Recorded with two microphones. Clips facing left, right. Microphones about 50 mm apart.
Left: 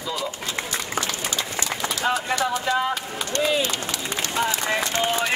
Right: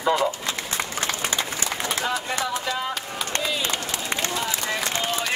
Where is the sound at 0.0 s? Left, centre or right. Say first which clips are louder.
Right 7 dB; right.